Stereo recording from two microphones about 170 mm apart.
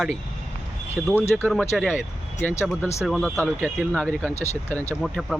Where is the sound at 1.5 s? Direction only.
Centre (ahead or behind).